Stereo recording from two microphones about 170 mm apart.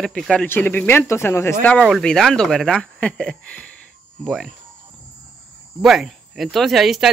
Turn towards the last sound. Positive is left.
turn(degrees=0)  # may be behind; listen again after turning